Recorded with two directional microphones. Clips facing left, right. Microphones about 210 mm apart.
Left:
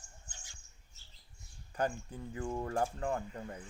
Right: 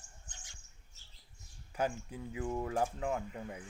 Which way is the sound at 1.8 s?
5° right (ahead or behind).